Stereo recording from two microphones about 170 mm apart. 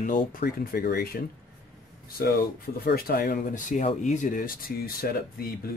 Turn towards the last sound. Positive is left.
turn(degrees=60)  # may be behind; listen again after turning